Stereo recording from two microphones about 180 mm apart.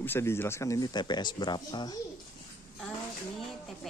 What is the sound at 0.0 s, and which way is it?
Speech, 15° left (ahead or behind).